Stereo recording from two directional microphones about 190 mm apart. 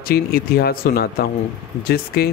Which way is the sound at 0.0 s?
55° left (ahead or behind).